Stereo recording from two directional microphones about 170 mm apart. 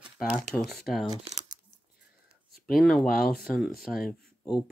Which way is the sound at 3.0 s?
60° left (ahead or behind).